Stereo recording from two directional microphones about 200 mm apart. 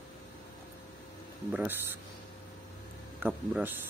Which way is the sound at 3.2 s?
10° right (ahead or behind).